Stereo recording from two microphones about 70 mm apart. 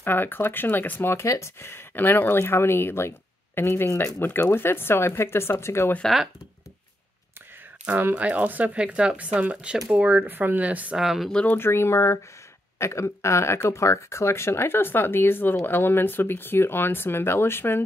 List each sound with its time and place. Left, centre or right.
0.0 s speech: left
1.2 s speech: left
7.8 s speech: centre
10.2 s speech: right
11.0 s speech: centre
11.5 s speech: left